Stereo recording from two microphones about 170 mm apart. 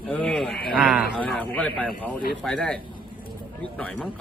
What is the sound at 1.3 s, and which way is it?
Speech, 10° left (ahead or behind).